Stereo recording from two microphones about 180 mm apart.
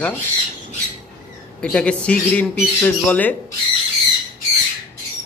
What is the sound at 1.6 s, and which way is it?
Speech, 5° left (ahead or behind).